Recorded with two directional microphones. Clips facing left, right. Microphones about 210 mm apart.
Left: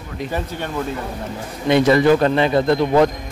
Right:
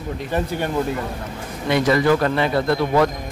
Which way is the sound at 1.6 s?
25° left (ahead or behind).